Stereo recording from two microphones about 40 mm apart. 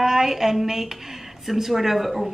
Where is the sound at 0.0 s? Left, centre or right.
Centre.